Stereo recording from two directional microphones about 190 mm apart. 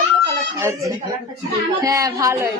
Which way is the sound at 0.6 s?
15° right (ahead or behind).